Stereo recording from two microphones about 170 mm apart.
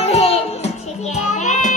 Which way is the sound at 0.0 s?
35° left (ahead or behind).